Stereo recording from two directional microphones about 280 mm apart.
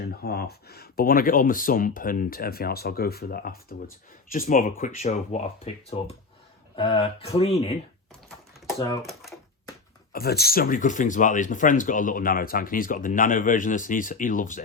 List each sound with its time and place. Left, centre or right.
0.0 s speech: left
8.8 s speech: centre
10.1 s speech: left